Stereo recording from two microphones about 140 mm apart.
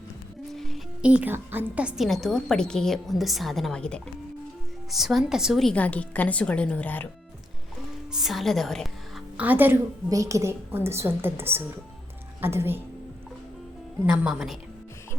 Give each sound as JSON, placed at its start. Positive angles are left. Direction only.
{"t": 0.5, "sound": "music", "side_deg": 0}
{"t": 1.0, "sound": "a woman's voice", "side_deg": -10}
{"t": 8.1, "sound": "a woman's voice", "side_deg": 0}
{"t": 9.4, "sound": "a woman's voice", "side_deg": -15}
{"t": 10.1, "sound": "a woman's voice", "side_deg": -25}
{"t": 14.1, "sound": "a woman's voice", "side_deg": -5}